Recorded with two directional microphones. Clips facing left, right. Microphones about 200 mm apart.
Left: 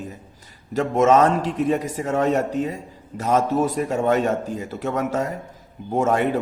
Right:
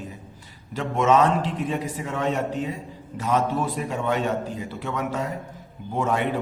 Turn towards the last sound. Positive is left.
turn(degrees=45)  # may be behind; listen again after turning